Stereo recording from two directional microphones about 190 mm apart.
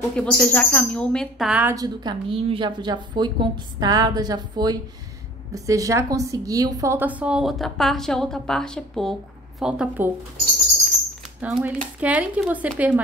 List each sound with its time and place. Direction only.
0.1 s a woman's voice: 5° left (ahead or behind)
1.8 s a woman's voice: 25° right (ahead or behind); by 10.1 s 5° right (ahead or behind)
11.4 s speech: 5° right (ahead or behind)